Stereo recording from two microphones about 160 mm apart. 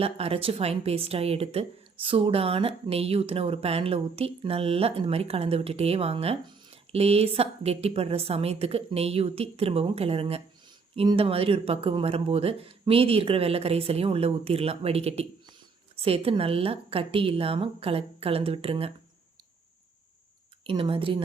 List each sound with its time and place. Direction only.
0.0 s speech: 35° right (ahead or behind)
20.7 s speech: 35° right (ahead or behind)